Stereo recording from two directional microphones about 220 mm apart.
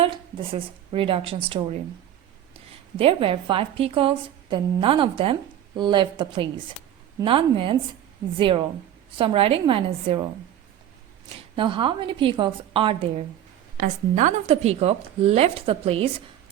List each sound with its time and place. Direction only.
0.0 s a woman's voice: 25° right (ahead or behind)
3.0 s a woman's voice: 25° right (ahead or behind)
11.3 s a woman's voice: 25° right (ahead or behind)
13.7 s a woman's voice: 35° right (ahead or behind)